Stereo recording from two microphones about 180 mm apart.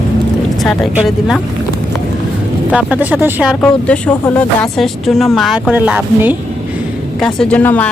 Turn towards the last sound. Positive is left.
turn(degrees=10)  # may be behind; listen again after turning